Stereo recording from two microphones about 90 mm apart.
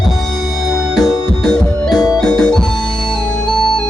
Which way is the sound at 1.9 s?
45° left (ahead or behind).